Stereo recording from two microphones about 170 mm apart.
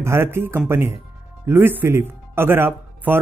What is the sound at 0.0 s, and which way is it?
Speech, 15° right (ahead or behind).